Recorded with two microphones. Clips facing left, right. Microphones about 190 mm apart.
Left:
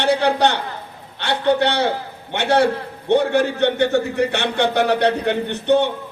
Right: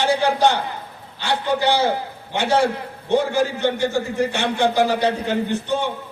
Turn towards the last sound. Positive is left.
turn(degrees=65)  # may be behind; listen again after turning